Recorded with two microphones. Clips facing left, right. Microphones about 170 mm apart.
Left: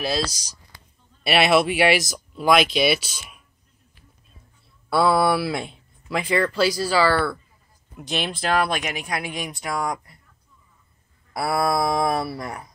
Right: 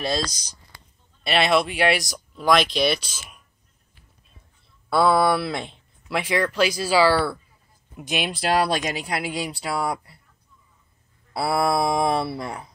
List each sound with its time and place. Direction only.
0.0 s speech: 5° left (ahead or behind)
4.8 s speech: centre (ahead or behind)
8.5 s speech: 35° right (ahead or behind)
11.4 s speech: 25° right (ahead or behind)